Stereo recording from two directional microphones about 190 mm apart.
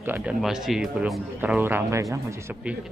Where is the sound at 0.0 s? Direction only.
10° right (ahead or behind).